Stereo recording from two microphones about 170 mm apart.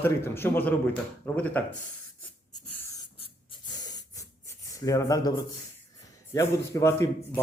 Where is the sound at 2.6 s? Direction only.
10° left (ahead or behind).